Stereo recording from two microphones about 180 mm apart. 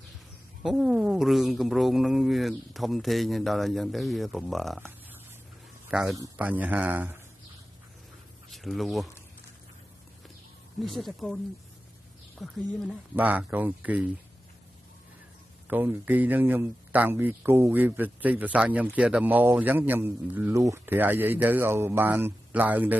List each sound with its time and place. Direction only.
0.6 s speech: centre (ahead or behind)
5.9 s a man's voice: 5° right (ahead or behind)
6.1 s speech: 15° right (ahead or behind)
8.5 s speech: centre (ahead or behind)
10.8 s speech: centre (ahead or behind)
12.4 s speech: centre (ahead or behind)
13.1 s speech: 10° right (ahead or behind)
15.7 s speech: 10° right (ahead or behind)